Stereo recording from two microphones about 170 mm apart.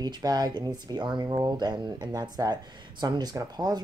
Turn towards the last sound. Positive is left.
turn(degrees=-25)  # may be behind; listen again after turning